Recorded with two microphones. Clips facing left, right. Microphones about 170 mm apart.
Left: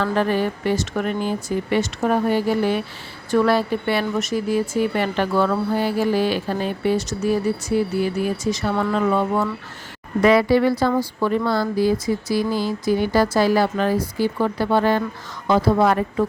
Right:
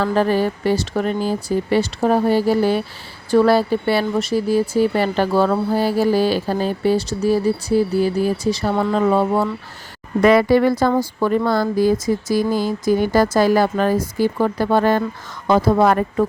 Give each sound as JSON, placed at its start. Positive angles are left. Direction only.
{"t": 0.0, "sound": "speech", "side_deg": -35}
{"t": 10.2, "sound": "speech", "side_deg": -50}